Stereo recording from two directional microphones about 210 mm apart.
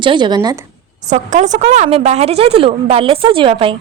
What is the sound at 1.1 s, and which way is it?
Speech, 35° right (ahead or behind).